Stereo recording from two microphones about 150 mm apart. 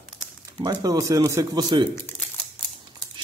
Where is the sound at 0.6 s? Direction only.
25° right (ahead or behind).